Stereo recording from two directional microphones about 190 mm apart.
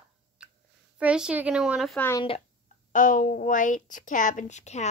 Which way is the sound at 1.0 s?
5° right (ahead or behind).